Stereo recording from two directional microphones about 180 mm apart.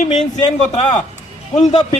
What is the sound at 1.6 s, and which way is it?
Speech, 40° left (ahead or behind).